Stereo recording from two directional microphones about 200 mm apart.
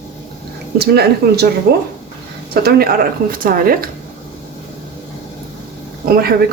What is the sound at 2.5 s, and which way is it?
Speech, 50° right (ahead or behind).